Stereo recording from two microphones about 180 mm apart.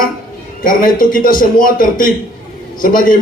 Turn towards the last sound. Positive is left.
turn(degrees=50)  # may be behind; listen again after turning